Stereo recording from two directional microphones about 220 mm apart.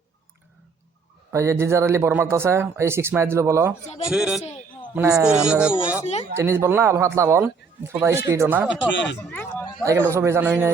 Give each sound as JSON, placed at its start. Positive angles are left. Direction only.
{"t": 1.3, "sound": "speech", "side_deg": -15}
{"t": 4.9, "sound": "speech", "side_deg": -15}
{"t": 5.2, "sound": "speech", "side_deg": -5}
{"t": 8.9, "sound": "speech", "side_deg": 55}
{"t": 9.3, "sound": "a sound", "side_deg": 10}
{"t": 9.8, "sound": "speech", "side_deg": -15}